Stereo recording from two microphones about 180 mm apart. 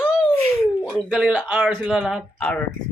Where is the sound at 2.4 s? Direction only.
10° left (ahead or behind).